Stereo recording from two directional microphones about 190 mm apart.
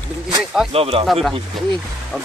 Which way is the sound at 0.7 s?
30° right (ahead or behind).